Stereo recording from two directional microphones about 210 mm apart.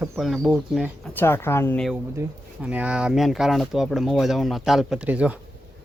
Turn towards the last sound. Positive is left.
turn(degrees=-5)  # may be behind; listen again after turning